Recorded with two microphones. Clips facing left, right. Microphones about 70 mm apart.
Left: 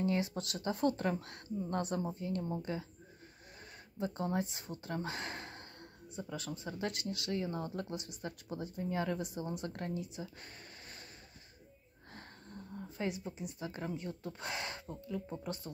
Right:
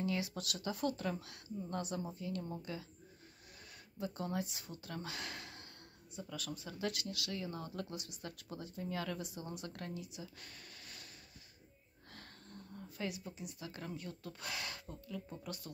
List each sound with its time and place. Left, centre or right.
0.0 s speech: left
4.0 s speech: left
12.1 s speech: left